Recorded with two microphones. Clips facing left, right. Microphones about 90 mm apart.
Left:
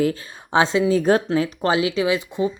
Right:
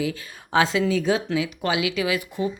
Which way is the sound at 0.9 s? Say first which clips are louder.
Left 5 dB; 45° left (ahead or behind).